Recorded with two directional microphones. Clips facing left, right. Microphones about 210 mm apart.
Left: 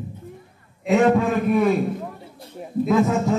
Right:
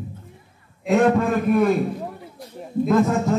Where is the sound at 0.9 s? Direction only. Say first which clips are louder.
Even; centre (ahead or behind).